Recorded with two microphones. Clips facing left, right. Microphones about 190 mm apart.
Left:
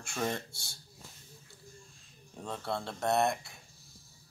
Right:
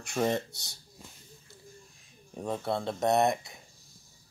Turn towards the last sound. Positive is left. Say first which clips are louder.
# right 4 dB
turn(degrees=-20)  # may be behind; listen again after turning